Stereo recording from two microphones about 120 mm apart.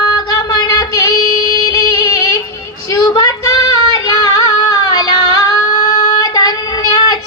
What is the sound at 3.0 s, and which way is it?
Female singing, 35° left (ahead or behind).